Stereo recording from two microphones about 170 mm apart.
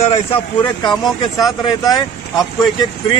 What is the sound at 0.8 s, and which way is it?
Speech, 25° left (ahead or behind).